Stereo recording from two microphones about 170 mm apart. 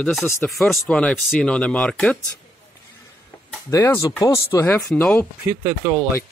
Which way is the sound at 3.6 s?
20° left (ahead or behind).